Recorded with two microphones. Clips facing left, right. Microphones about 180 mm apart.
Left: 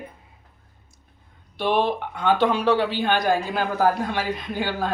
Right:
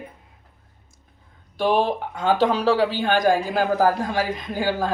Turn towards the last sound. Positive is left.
turn(degrees=-40)  # may be behind; listen again after turning